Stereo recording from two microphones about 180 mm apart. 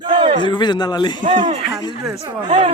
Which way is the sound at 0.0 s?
25° right (ahead or behind).